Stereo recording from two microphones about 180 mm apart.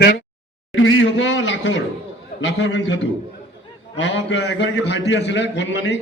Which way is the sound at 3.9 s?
80° left.